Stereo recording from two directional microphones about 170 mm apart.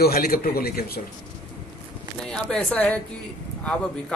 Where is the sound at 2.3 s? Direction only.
5° left (ahead or behind).